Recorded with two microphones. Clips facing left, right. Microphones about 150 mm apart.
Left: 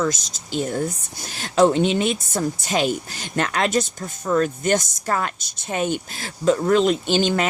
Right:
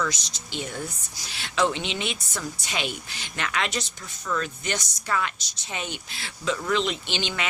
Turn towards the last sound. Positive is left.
turn(degrees=45)  # may be behind; listen again after turning